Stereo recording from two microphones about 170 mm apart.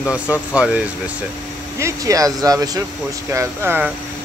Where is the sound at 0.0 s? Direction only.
5° right (ahead or behind).